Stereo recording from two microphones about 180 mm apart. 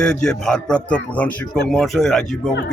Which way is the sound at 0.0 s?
5° left (ahead or behind).